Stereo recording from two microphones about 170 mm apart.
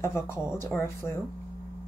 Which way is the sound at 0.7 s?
5° left (ahead or behind).